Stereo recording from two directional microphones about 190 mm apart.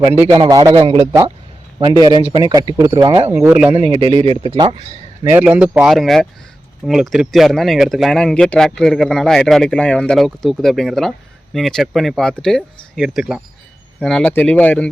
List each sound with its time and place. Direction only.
0.3 s speech: 20° right (ahead or behind)
3.3 s speech: 10° right (ahead or behind)
3.7 s speech: 25° right (ahead or behind)
5.3 s speech: 5° right (ahead or behind)